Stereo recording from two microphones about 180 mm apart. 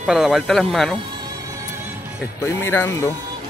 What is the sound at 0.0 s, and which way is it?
Speech, centre (ahead or behind).